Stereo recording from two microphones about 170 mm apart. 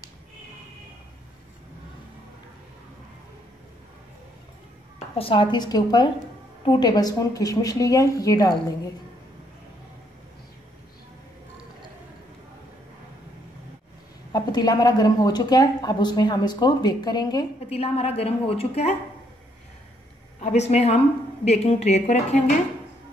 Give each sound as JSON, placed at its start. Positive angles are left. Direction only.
{"t": 4.9, "sound": "a woman's voice", "side_deg": 30}
{"t": 14.3, "sound": "speech", "side_deg": 25}
{"t": 17.6, "sound": "a woman's voice", "side_deg": 35}
{"t": 20.3, "sound": "a woman's voice", "side_deg": 40}